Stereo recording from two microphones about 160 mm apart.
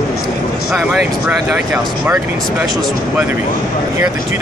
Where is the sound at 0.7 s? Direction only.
Centre (ahead or behind).